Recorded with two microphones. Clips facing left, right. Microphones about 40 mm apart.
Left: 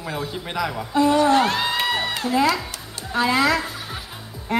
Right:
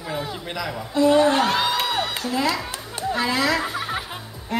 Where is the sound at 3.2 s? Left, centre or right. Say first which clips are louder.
Left 4 dB; centre.